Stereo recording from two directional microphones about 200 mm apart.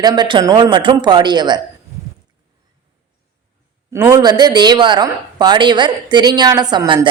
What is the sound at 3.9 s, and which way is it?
A woman's voice, 20° right (ahead or behind).